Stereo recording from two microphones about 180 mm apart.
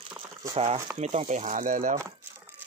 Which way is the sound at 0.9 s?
35° right (ahead or behind).